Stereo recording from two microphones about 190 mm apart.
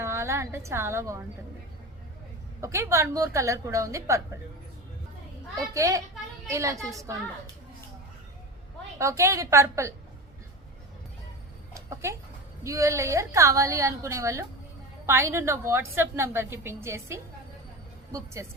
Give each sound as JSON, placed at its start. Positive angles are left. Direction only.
{"t": 0.0, "sound": "a woman's voice", "side_deg": -15}
{"t": 2.6, "sound": "a woman's voice", "side_deg": -15}
{"t": 5.7, "sound": "a woman's voice", "side_deg": -15}
{"t": 9.0, "sound": "a woman's voice", "side_deg": -15}
{"t": 11.7, "sound": "a sound", "side_deg": -15}
{"t": 12.6, "sound": "a woman's voice", "side_deg": -15}
{"t": 18.4, "sound": "a woman's voice", "side_deg": -15}